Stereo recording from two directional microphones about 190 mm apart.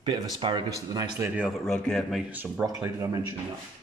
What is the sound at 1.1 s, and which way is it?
Speech, 5° right (ahead or behind).